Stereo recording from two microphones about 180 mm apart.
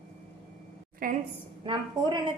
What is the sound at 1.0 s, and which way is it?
Speech, 50° right (ahead or behind).